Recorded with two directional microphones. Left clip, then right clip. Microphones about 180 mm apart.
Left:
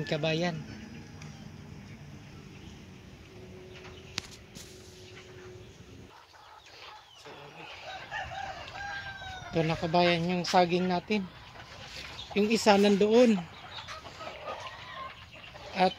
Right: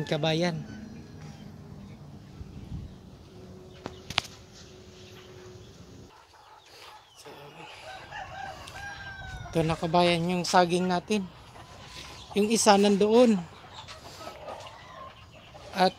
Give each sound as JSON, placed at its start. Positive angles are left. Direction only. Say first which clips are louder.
{"t": 0.0, "sound": "speech", "louder": "right 3 dB", "side_deg": -15}
{"t": 4.2, "sound": "a sound", "louder": "right 9 dB", "side_deg": 5}
{"t": 9.5, "sound": "speech", "louder": "right 2 dB", "side_deg": -10}
{"t": 12.4, "sound": "speech", "louder": "right 2 dB", "side_deg": -5}